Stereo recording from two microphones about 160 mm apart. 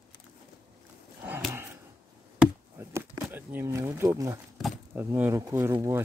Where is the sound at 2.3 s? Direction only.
15° right (ahead or behind).